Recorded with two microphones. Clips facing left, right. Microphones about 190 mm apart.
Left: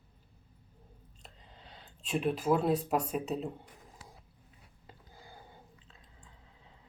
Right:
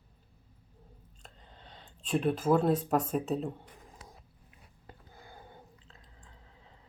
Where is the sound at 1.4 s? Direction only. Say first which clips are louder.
Right 1 dB; centre (ahead or behind).